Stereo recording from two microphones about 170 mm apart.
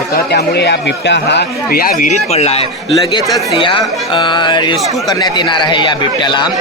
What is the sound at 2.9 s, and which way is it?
Speech, 25° left (ahead or behind).